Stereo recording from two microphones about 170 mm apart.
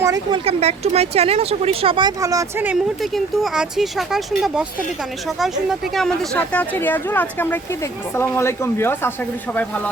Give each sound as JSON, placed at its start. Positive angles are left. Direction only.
{"t": 0.0, "sound": "speech", "side_deg": -25}
{"t": 2.6, "sound": "speech", "side_deg": 0}